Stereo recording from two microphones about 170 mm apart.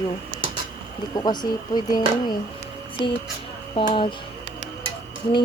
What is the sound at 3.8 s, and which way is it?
Speech, 30° left (ahead or behind).